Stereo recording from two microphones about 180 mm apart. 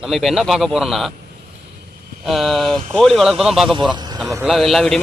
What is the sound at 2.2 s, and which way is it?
A man's voice, centre (ahead or behind).